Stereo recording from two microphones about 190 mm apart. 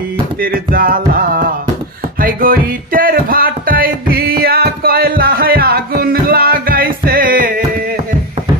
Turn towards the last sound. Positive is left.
turn(degrees=-45)  # may be behind; listen again after turning